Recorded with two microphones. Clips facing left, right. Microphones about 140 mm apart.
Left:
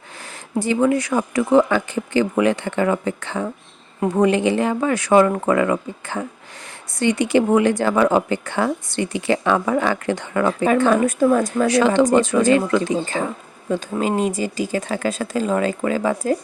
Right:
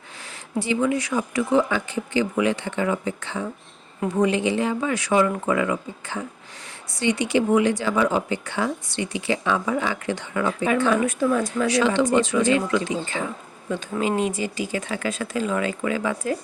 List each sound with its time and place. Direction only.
0.6 s speech: 45° left (ahead or behind)